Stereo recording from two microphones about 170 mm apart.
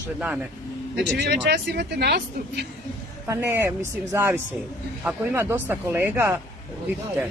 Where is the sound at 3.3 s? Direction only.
15° right (ahead or behind).